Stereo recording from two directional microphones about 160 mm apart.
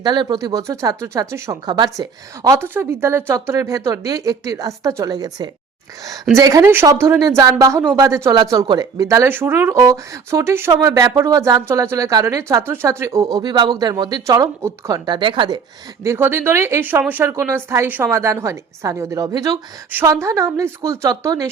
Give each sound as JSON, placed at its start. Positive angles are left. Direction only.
{"t": 0.0, "sound": "speech", "side_deg": -25}
{"t": 16.0, "sound": "a woman's voice", "side_deg": -15}